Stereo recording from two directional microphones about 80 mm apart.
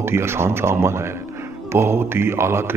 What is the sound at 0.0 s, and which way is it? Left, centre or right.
A man's voice, right.